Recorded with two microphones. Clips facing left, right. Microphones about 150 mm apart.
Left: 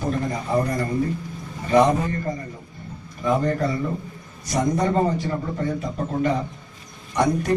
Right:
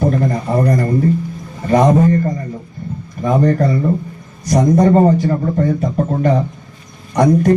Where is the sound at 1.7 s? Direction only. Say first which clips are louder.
Right 6 dB; 45° right (ahead or behind).